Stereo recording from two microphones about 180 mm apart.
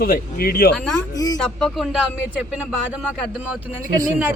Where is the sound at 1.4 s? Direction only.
5° left (ahead or behind).